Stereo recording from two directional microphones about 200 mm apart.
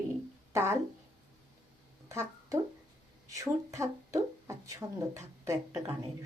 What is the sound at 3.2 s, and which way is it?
Speech, 15° right (ahead or behind).